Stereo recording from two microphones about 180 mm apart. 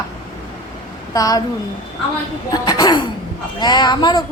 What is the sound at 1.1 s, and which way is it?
Speech, 20° left (ahead or behind).